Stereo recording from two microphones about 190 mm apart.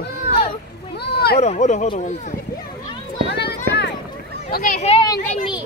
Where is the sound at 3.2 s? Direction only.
60° left (ahead or behind).